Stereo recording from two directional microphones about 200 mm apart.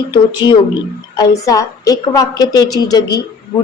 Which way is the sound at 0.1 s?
20° left (ahead or behind).